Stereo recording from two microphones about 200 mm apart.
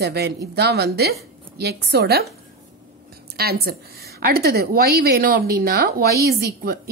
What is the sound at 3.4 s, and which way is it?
A woman's voice, 50° right (ahead or behind).